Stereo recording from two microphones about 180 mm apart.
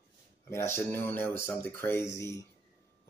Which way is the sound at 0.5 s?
15° left (ahead or behind).